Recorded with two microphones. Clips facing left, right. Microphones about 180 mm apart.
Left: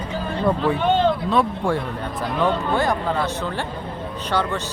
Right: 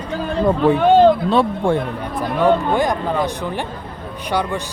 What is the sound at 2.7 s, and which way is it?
A man's voice, 15° right (ahead or behind).